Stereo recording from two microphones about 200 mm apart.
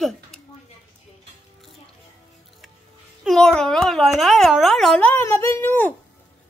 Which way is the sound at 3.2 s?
Centre (ahead or behind).